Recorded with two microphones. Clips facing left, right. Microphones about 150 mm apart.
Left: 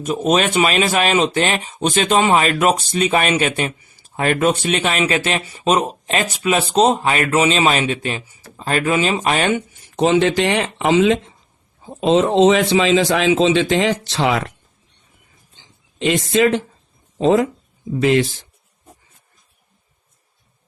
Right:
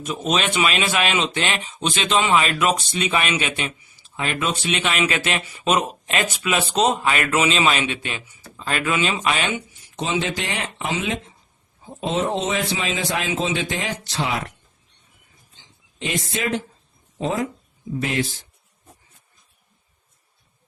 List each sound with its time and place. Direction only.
0.0 s speech: 45° left (ahead or behind); by 14.5 s 90° left
16.0 s speech: 80° left